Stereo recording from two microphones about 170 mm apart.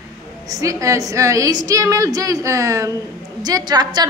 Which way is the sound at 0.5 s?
20° right (ahead or behind).